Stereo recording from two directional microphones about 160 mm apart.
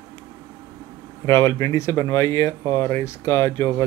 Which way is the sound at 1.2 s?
15° left (ahead or behind).